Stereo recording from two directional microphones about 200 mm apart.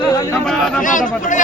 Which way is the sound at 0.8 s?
40° left (ahead or behind).